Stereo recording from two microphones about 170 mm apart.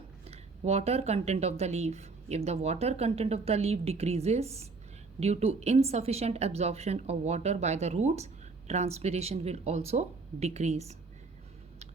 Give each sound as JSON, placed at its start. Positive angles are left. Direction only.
{"t": 0.3, "sound": "a woman's voice", "side_deg": -40}